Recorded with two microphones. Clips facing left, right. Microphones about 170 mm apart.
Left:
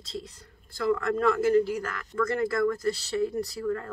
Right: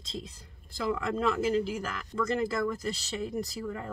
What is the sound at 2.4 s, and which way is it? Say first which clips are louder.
Speech: left 4 dB; 15° right (ahead or behind).